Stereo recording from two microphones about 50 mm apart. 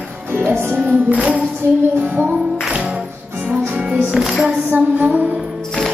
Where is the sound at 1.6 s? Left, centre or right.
Right.